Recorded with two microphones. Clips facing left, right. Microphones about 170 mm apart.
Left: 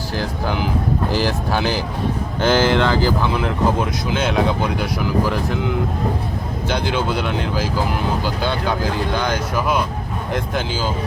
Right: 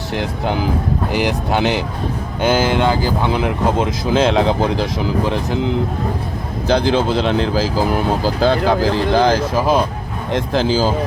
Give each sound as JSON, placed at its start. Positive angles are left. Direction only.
{"t": 1.1, "sound": "speech", "side_deg": -15}
{"t": 2.4, "sound": "speech", "side_deg": -10}
{"t": 3.3, "sound": "speech", "side_deg": -25}